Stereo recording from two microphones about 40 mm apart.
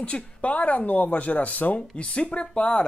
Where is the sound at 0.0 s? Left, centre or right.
Left.